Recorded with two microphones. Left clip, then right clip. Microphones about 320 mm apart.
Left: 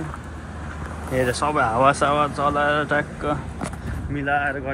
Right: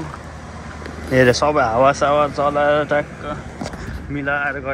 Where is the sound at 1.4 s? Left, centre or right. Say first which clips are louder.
Right 4 dB; centre.